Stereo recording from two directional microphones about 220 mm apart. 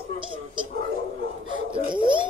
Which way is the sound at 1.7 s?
20° right (ahead or behind).